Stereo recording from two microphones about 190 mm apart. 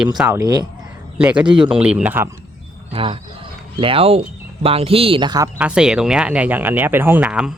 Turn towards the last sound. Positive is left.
turn(degrees=-5)  # may be behind; listen again after turning